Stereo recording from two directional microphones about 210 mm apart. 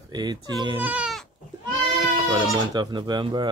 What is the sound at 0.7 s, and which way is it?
Speech, 5° right (ahead or behind).